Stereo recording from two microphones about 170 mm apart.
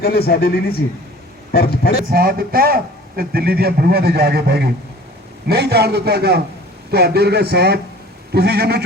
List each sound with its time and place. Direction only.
0.0 s a man's voice: 65° left (ahead or behind)
2.0 s a man's voice: 60° right (ahead or behind)